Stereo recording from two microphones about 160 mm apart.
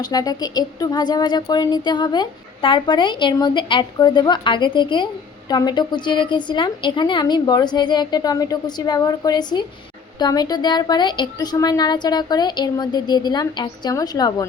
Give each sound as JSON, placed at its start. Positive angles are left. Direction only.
{"t": 0.0, "sound": "a woman's voice", "side_deg": 25}